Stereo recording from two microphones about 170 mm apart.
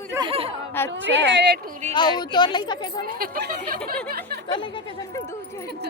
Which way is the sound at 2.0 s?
25° left (ahead or behind).